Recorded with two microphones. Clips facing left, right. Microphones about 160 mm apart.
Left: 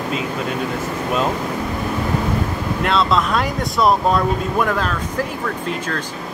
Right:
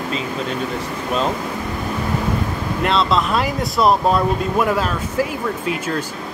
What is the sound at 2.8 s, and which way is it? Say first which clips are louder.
Speech: even; centre (ahead or behind).